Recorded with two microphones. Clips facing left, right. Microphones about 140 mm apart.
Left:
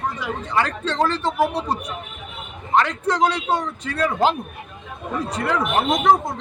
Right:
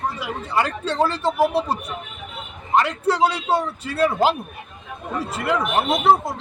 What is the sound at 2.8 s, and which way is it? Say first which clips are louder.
Speech: even; 10° right (ahead or behind).